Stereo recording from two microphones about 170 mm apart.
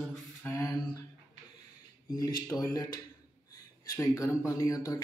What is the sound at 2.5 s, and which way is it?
Speech, 20° left (ahead or behind).